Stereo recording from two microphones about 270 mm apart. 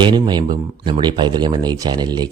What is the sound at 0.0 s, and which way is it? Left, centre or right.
Speech, centre.